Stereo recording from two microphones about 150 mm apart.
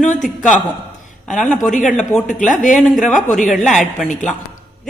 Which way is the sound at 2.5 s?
60° left (ahead or behind).